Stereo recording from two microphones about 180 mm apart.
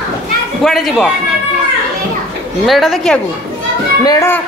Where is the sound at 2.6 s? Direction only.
Centre (ahead or behind).